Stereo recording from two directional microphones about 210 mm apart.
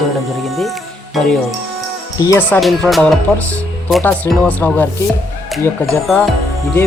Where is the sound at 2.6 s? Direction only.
Centre (ahead or behind).